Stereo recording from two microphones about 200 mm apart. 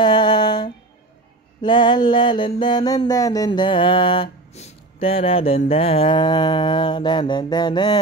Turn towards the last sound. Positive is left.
turn(degrees=20)  # may be behind; listen again after turning